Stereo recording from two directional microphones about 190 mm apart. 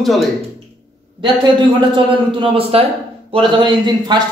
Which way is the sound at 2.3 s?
30° right (ahead or behind).